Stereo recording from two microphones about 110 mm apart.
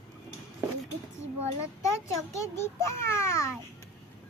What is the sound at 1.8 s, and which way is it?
A child's voice, 25° left (ahead or behind).